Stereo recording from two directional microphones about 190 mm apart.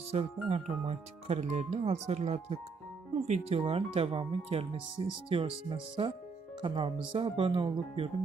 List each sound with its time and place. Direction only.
0.1 s speech: 30° right (ahead or behind)